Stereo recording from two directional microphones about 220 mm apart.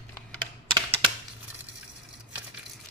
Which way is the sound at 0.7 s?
20° right (ahead or behind).